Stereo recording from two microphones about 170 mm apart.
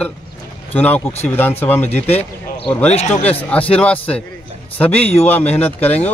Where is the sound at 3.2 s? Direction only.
10° left (ahead or behind).